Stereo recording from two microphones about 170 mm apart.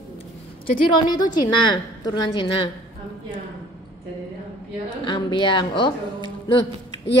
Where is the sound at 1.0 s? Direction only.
25° left (ahead or behind).